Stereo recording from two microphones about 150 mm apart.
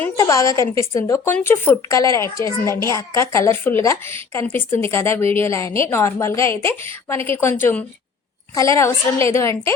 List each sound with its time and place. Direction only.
0.2 s a woman's voice: 20° left (ahead or behind)